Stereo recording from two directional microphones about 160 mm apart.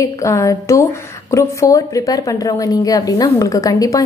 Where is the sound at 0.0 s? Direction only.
20° left (ahead or behind).